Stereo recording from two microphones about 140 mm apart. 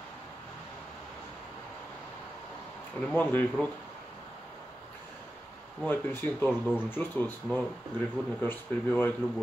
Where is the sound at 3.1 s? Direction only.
10° left (ahead or behind).